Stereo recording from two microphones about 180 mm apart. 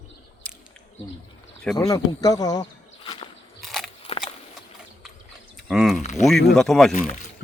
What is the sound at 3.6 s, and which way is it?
Biting, centre (ahead or behind).